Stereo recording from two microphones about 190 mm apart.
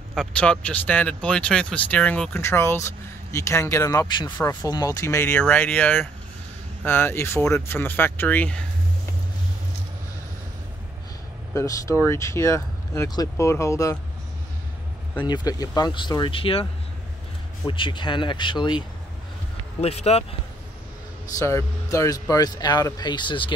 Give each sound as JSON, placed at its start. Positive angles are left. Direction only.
{"t": 0.1, "sound": "speech", "side_deg": 5}
{"t": 11.5, "sound": "speech", "side_deg": 15}
{"t": 15.2, "sound": "speech", "side_deg": 20}
{"t": 17.6, "sound": "speech", "side_deg": 25}
{"t": 21.4, "sound": "speech", "side_deg": 15}